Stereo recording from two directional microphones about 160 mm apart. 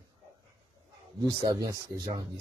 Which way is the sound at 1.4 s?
25° right (ahead or behind).